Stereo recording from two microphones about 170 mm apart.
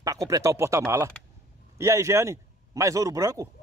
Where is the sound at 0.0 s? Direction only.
20° right (ahead or behind).